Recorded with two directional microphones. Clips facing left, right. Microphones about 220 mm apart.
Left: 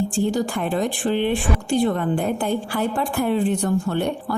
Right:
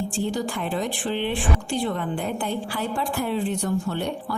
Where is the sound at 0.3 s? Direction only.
50° left (ahead or behind).